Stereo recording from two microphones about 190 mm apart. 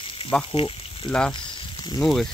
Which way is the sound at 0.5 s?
30° left (ahead or behind).